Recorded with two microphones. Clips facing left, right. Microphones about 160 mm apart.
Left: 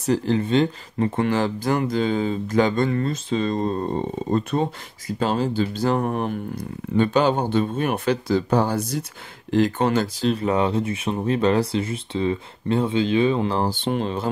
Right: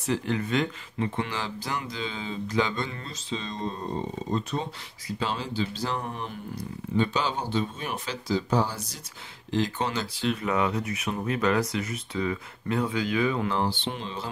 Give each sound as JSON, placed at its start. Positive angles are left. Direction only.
{"t": 0.0, "sound": "speech", "side_deg": 35}
{"t": 0.9, "sound": "speech", "side_deg": 45}
{"t": 10.2, "sound": "speech", "side_deg": 30}
{"t": 13.6, "sound": "speech", "side_deg": 45}